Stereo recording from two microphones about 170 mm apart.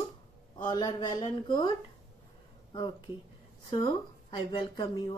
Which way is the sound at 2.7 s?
25° left (ahead or behind).